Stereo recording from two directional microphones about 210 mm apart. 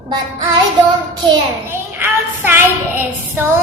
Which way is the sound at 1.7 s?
10° right (ahead or behind).